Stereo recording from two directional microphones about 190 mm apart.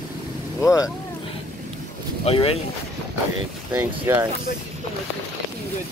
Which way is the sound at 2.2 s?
30° left (ahead or behind).